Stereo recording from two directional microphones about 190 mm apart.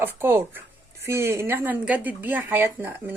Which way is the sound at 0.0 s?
10° right (ahead or behind).